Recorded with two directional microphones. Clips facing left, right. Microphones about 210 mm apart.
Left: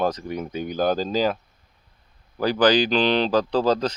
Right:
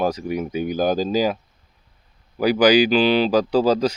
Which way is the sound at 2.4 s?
10° right (ahead or behind).